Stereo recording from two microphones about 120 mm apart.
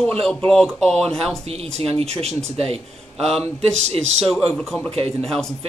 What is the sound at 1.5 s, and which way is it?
Speech, 60° right (ahead or behind).